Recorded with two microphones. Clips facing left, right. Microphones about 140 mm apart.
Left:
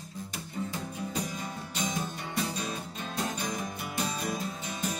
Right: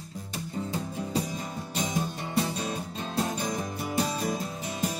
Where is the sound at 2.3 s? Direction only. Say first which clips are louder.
Right 5 dB; 30° right (ahead or behind).